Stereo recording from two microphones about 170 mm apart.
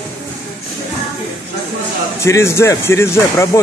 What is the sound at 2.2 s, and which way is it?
Speech, 15° left (ahead or behind).